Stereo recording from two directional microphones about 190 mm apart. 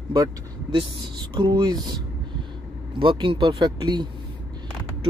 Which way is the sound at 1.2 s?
25° right (ahead or behind).